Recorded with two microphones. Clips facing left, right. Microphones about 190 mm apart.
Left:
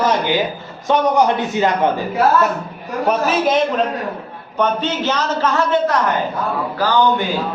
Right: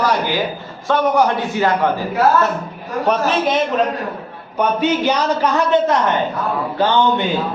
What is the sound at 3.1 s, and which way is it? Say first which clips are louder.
Speech: left 1 dB; centre (ahead or behind).